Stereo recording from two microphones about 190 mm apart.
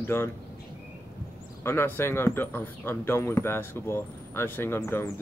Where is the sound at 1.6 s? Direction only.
15° left (ahead or behind).